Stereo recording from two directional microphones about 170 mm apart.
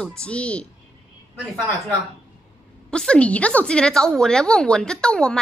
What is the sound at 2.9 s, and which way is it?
A woman's voice, 5° left (ahead or behind).